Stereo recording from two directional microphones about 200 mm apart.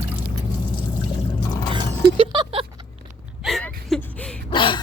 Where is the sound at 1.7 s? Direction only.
25° right (ahead or behind).